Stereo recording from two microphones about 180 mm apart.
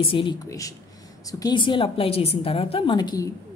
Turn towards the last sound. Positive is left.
turn(degrees=20)  # may be behind; listen again after turning